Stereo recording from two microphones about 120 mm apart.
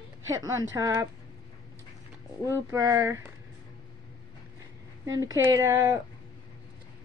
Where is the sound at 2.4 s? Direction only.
25° right (ahead or behind).